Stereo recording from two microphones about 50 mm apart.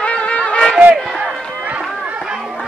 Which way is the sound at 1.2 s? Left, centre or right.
Right.